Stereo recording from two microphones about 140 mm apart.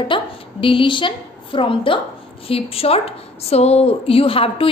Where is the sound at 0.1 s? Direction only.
40° left (ahead or behind).